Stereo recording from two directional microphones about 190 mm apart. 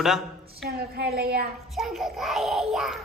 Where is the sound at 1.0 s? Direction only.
55° right (ahead or behind).